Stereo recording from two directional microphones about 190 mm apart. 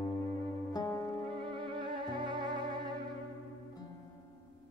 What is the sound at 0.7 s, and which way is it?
Music, 15° left (ahead or behind).